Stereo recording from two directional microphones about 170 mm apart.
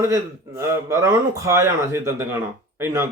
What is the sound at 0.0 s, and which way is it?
A man's voice, 20° right (ahead or behind).